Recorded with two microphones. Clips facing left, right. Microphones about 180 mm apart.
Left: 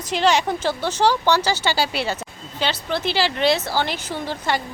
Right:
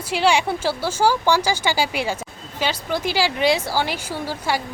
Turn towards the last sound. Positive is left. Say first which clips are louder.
# even
turn(degrees=-10)  # may be behind; listen again after turning